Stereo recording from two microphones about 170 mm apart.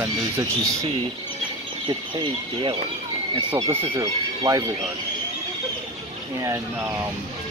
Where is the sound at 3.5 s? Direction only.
15° right (ahead or behind).